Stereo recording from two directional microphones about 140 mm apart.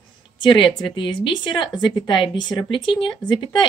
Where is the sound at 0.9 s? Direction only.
35° left (ahead or behind).